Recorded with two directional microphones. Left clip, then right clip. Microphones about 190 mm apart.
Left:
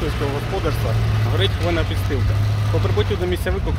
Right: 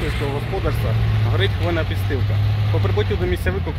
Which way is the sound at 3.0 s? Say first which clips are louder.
Right 1 dB; centre (ahead or behind).